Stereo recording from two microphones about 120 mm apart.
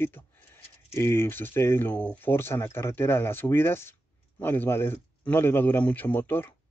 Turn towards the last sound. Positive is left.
turn(degrees=15)  # may be behind; listen again after turning